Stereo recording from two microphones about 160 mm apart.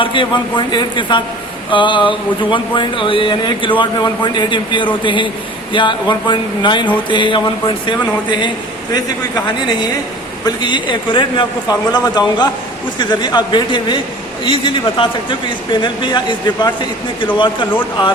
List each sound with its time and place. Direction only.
0.0 s a man's voice: 30° left (ahead or behind)